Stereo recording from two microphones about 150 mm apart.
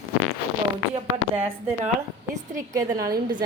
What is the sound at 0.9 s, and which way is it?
Speech, 40° right (ahead or behind).